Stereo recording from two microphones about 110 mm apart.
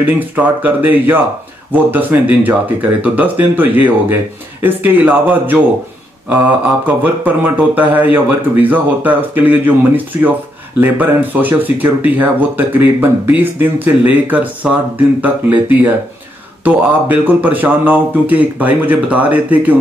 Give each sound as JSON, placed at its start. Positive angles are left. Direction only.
{"t": 0.0, "sound": "speech", "side_deg": -15}
{"t": 7.0, "sound": "speech", "side_deg": -15}